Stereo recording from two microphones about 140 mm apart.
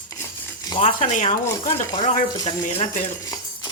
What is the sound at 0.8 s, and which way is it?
Speech, 65° left (ahead or behind).